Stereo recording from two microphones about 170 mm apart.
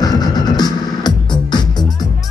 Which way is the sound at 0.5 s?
25° left (ahead or behind).